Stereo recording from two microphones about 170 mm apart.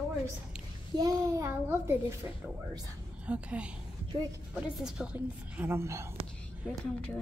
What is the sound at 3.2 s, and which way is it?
A woman's voice, 5° right (ahead or behind).